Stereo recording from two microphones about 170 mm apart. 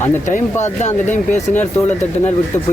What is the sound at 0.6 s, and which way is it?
Speech, 40° left (ahead or behind).